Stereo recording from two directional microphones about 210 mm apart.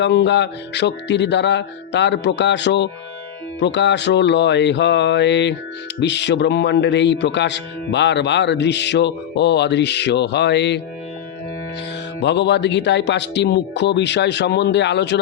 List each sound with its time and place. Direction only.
0.0 s a man's voice: 55° left (ahead or behind)
12.2 s a man's voice: 55° left (ahead or behind)